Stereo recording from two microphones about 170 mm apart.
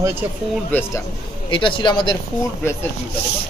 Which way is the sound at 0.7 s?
15° left (ahead or behind).